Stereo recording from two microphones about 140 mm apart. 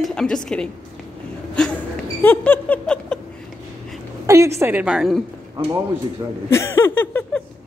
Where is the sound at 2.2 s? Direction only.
10° left (ahead or behind).